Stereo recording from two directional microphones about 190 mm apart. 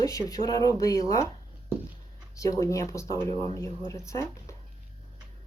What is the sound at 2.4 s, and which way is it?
Speech, 15° left (ahead or behind).